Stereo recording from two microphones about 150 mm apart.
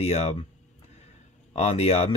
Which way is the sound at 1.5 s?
45° left (ahead or behind).